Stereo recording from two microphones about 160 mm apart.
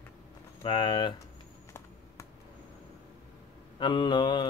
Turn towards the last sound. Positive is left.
turn(degrees=30)  # may be behind; listen again after turning